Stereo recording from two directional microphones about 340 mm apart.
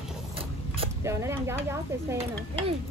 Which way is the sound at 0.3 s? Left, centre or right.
Centre.